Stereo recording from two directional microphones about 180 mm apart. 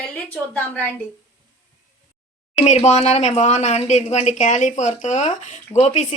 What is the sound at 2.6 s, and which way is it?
Speech, 40° left (ahead or behind).